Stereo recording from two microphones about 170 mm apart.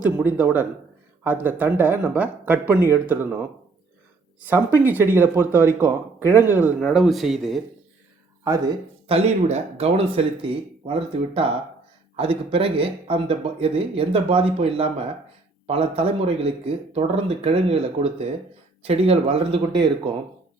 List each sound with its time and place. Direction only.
0.0 s speech: 10° right (ahead or behind)
4.4 s speech: 10° right (ahead or behind)
8.4 s speech: 20° right (ahead or behind)
9.0 s speech: 40° right (ahead or behind)